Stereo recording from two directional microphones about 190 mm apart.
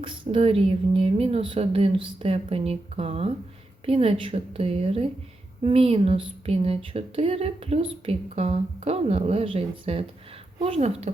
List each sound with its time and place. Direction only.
0.0 s speech: 30° right (ahead or behind)